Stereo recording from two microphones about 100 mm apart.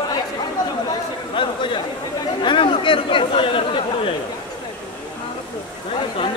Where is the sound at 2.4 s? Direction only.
55° left (ahead or behind).